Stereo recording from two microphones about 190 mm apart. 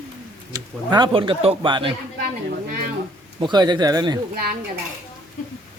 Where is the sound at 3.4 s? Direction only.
20° right (ahead or behind).